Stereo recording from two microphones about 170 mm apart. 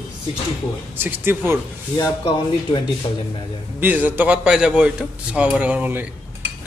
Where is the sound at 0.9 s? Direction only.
10° right (ahead or behind).